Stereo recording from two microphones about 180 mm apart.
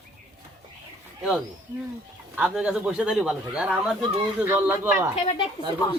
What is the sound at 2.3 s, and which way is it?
Speech, 5° right (ahead or behind).